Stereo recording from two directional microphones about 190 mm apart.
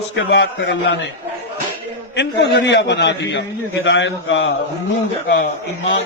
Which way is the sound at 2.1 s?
65° left (ahead or behind).